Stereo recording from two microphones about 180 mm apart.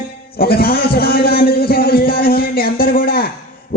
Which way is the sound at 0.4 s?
60° left (ahead or behind).